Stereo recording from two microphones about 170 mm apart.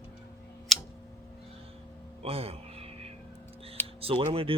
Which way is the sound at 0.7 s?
Centre (ahead or behind).